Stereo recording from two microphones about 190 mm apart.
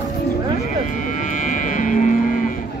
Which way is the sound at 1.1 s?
40° left (ahead or behind).